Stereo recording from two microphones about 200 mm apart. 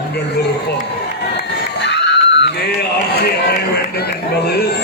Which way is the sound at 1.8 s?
60° left (ahead or behind).